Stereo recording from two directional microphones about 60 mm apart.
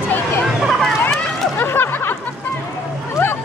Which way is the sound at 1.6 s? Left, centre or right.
Left.